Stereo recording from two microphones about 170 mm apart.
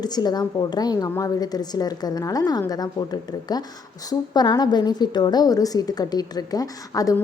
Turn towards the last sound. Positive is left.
turn(degrees=20)  # may be behind; listen again after turning